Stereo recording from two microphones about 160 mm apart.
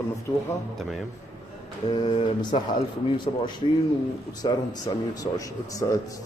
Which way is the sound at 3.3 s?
40° left (ahead or behind).